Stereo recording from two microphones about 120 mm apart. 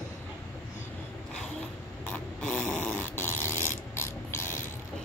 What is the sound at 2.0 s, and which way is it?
Dog, 10° left (ahead or behind).